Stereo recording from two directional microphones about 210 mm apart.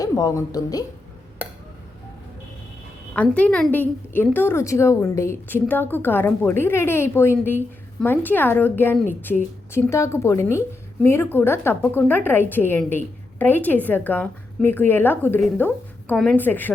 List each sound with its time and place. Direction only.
0.0 s a woman's voice: 15° left (ahead or behind)
3.2 s a woman's voice: 5° left (ahead or behind)